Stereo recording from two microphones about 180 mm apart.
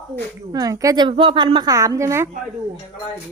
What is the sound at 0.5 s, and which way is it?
A woman's voice, 20° right (ahead or behind).